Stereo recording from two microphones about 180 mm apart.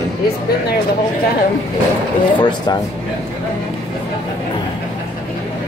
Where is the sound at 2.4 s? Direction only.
25° left (ahead or behind).